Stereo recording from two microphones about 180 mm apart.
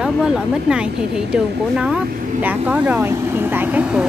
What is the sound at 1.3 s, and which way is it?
Speech, 5° right (ahead or behind).